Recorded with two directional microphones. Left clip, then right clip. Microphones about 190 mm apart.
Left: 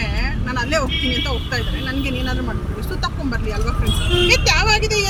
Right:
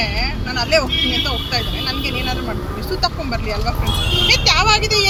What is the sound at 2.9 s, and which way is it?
Speech, 10° right (ahead or behind).